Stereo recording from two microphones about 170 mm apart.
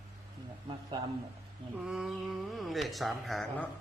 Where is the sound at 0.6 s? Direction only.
25° right (ahead or behind).